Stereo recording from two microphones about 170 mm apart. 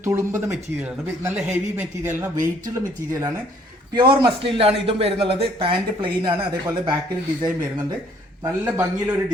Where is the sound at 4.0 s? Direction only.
30° right (ahead or behind).